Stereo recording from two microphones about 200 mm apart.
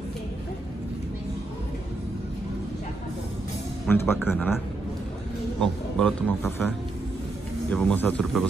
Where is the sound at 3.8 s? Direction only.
10° left (ahead or behind).